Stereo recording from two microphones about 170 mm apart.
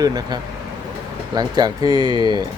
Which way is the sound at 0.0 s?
25° right (ahead or behind).